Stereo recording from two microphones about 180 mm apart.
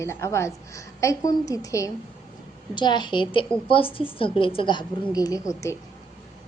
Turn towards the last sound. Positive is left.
turn(degrees=15)  # may be behind; listen again after turning